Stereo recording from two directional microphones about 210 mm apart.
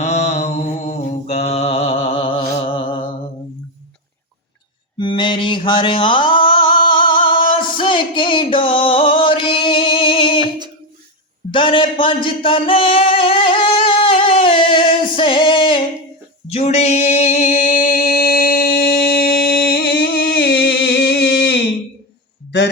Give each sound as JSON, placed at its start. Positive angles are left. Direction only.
{"t": 0.0, "sound": "mantra", "side_deg": 30}
{"t": 2.6, "sound": "a sound", "side_deg": 25}
{"t": 4.9, "sound": "mantra", "side_deg": 25}
{"t": 7.5, "sound": "music", "side_deg": 25}
{"t": 11.5, "sound": "a sound", "side_deg": 25}
{"t": 16.5, "sound": "music", "side_deg": 30}